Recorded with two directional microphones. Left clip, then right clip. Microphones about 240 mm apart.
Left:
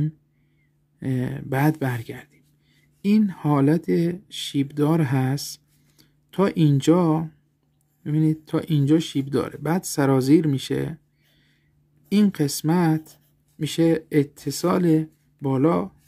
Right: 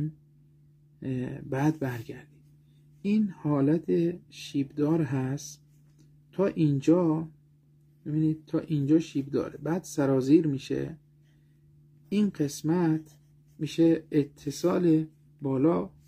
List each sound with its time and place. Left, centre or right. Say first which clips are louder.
0.9 s speech: left 6 dB; left
12.1 s speech: left 7 dB; left